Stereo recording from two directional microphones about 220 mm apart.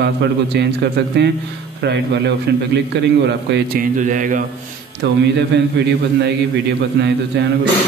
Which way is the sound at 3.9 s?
35° right (ahead or behind).